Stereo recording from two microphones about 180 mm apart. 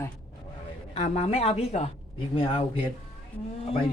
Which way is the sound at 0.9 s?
35° left (ahead or behind).